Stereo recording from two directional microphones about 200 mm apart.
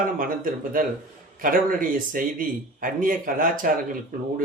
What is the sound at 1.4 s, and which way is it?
Speech, 45° right (ahead or behind).